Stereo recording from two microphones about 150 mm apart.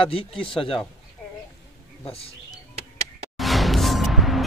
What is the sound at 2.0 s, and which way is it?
Speech, 40° left (ahead or behind).